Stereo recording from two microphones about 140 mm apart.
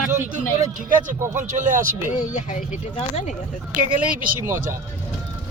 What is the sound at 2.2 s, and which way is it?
Speech, 60° left (ahead or behind).